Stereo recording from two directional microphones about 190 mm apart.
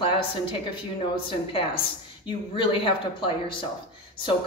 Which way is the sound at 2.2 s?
25° left (ahead or behind).